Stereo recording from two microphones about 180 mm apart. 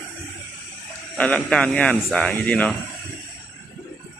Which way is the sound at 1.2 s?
5° left (ahead or behind).